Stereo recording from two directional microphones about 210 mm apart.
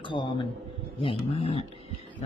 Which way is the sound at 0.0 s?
25° left (ahead or behind).